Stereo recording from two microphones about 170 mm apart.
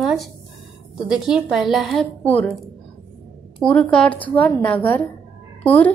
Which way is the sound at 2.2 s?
10° left (ahead or behind).